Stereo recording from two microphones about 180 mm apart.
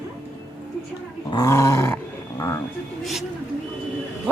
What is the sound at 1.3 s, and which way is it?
Growling, 20° left (ahead or behind).